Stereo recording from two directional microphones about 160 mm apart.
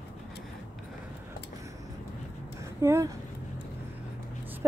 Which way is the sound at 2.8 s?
20° right (ahead or behind).